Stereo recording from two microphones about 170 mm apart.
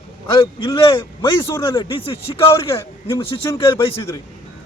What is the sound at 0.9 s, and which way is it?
A man's voice, 30° left (ahead or behind).